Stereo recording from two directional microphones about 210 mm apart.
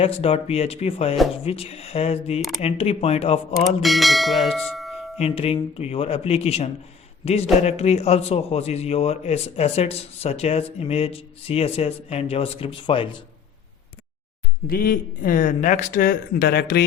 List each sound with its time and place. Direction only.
0.0 s a man's voice: 25° left (ahead or behind)
3.8 s bell: centre (ahead or behind)
5.1 s a man's voice: 30° left (ahead or behind)
14.7 s speech: 45° left (ahead or behind)